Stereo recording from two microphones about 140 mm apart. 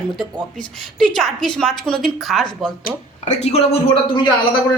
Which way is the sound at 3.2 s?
55° left (ahead or behind).